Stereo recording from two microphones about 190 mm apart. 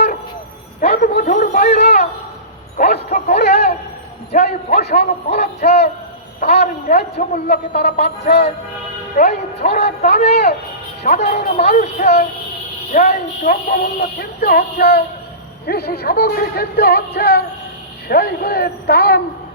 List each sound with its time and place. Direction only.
0.8 s speech: 45° left (ahead or behind)
1.8 s music: 35° left (ahead or behind)
2.7 s speech: 45° left (ahead or behind)
4.8 s speech: 55° left (ahead or behind)
5.4 s music: 35° left (ahead or behind)
6.4 s speech: 55° left (ahead or behind); by 8.4 s 40° left (ahead or behind)
9.7 s speech: 50° left (ahead or behind)
10.2 s music: 35° left (ahead or behind)
12.9 s speech: 40° left (ahead or behind)